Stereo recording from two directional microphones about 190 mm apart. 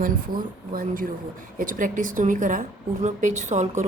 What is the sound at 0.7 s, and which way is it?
A woman's voice, 50° right (ahead or behind).